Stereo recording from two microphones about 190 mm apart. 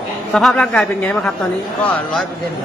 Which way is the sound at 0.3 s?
Centre (ahead or behind).